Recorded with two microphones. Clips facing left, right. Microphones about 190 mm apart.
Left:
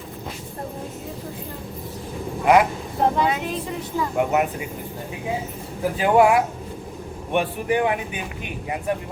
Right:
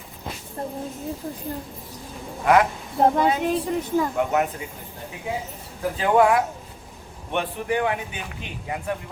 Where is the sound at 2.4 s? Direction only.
10° left (ahead or behind).